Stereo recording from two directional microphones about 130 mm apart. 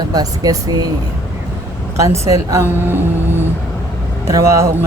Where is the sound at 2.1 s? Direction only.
25° right (ahead or behind).